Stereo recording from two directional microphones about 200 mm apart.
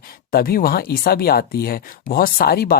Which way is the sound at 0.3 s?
50° left (ahead or behind).